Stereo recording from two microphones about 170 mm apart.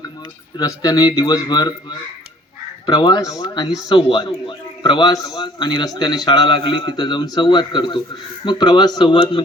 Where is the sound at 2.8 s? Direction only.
25° left (ahead or behind).